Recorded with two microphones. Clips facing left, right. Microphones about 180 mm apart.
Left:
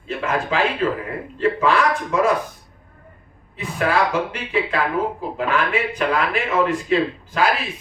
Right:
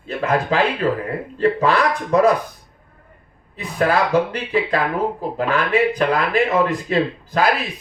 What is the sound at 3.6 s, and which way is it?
Speech, 35° right (ahead or behind).